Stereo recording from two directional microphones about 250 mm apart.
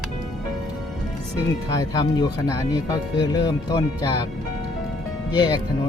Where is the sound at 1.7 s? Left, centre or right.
Centre.